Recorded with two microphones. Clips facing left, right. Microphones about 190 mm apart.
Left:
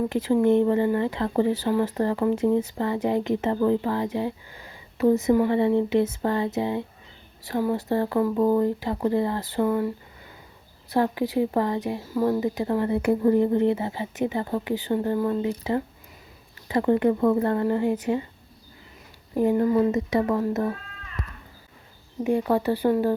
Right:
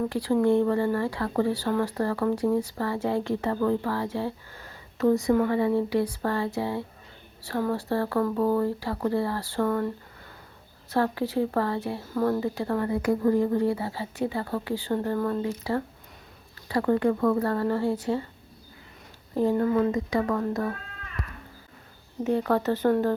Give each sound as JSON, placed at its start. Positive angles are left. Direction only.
{"t": 0.1, "sound": "speech", "side_deg": 20}
{"t": 19.4, "sound": "speech", "side_deg": 15}
{"t": 22.2, "sound": "speech", "side_deg": 15}